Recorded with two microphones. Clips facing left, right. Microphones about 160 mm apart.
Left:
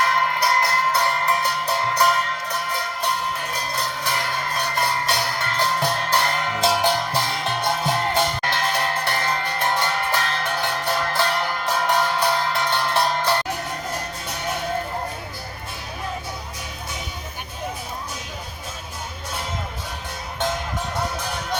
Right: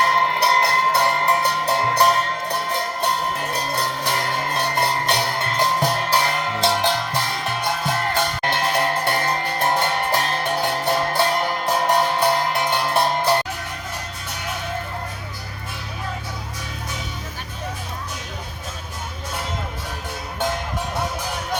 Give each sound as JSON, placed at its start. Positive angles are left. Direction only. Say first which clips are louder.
{"t": 0.0, "sound": "music", "louder": "right 2 dB", "side_deg": -30}
{"t": 4.0, "sound": "music", "louder": "right 2 dB", "side_deg": -35}
{"t": 6.1, "sound": "music", "louder": "right 1 dB", "side_deg": -5}
{"t": 6.8, "sound": "music", "louder": "left 1 dB", "side_deg": 10}
{"t": 8.4, "sound": "music", "louder": "right 3 dB", "side_deg": -20}
{"t": 12.5, "sound": "music", "louder": "right 2 dB", "side_deg": -15}